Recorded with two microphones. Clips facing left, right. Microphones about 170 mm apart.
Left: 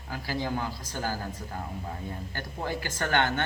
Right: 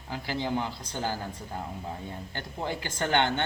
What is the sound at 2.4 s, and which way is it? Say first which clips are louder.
Speech: even; 20° right (ahead or behind).